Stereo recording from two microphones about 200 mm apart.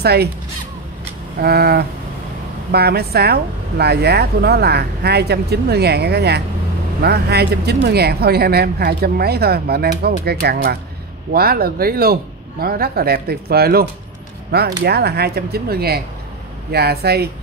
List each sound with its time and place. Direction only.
0.0 s speech: 55° right (ahead or behind)
1.4 s speech: 50° right (ahead or behind)